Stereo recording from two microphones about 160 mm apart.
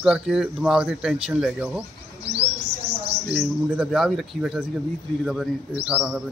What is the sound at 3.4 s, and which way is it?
Speech, 5° right (ahead or behind).